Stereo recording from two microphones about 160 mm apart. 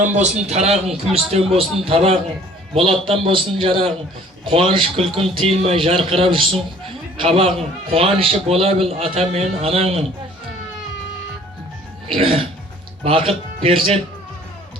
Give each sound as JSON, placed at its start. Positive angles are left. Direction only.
{"t": 0.0, "sound": "a man's voice", "side_deg": -45}
{"t": 12.0, "sound": "a man's voice", "side_deg": -35}